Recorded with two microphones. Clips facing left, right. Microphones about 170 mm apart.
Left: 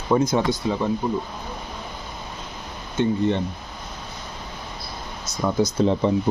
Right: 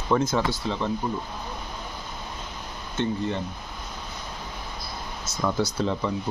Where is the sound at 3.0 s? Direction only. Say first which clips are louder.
Left 5 dB; 15° left (ahead or behind).